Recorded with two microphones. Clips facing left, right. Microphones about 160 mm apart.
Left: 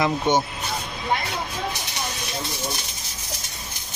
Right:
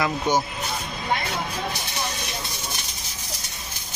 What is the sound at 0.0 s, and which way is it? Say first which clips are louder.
Speech: left 2 dB; 25° left (ahead or behind).